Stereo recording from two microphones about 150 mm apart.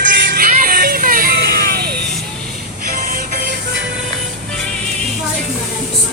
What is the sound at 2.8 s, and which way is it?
Music, 65° right (ahead or behind).